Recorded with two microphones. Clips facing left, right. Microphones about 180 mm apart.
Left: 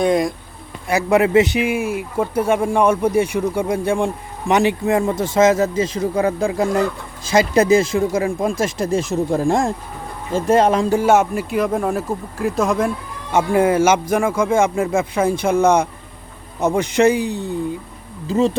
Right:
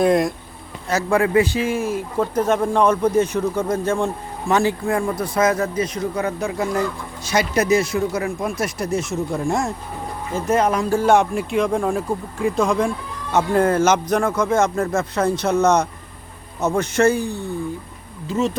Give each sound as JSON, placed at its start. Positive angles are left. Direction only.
{"t": 0.0, "sound": "speech", "side_deg": 0}
{"t": 0.9, "sound": "speech", "side_deg": 15}
{"t": 1.5, "sound": "speech", "side_deg": 10}
{"t": 8.8, "sound": "speech", "side_deg": 90}
{"t": 9.1, "sound": "speech", "side_deg": 35}
{"t": 11.0, "sound": "speech", "side_deg": 5}
{"t": 18.3, "sound": "speech", "side_deg": 35}